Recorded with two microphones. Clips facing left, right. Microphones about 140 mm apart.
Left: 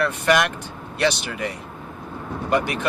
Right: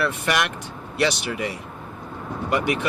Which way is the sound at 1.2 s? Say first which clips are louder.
Right 1 dB; 45° left (ahead or behind).